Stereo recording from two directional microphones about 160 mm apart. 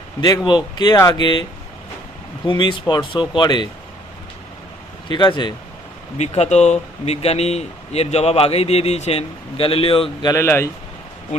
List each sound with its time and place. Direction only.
0.2 s speech: 25° left (ahead or behind)
2.5 s speech: 30° left (ahead or behind)
5.0 s speech: 30° left (ahead or behind)
6.1 s speech: 45° left (ahead or behind)
10.3 s speech: 15° left (ahead or behind)